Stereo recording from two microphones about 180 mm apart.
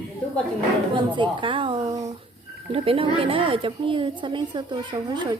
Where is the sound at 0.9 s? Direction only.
25° right (ahead or behind).